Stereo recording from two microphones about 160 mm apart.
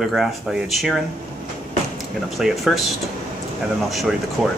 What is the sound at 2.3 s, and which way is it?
Speech, centre (ahead or behind).